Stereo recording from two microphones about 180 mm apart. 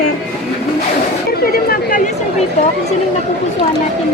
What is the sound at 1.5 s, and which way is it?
Speech, 50° left (ahead or behind).